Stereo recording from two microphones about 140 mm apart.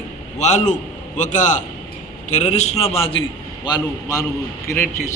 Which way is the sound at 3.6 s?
30° left (ahead or behind).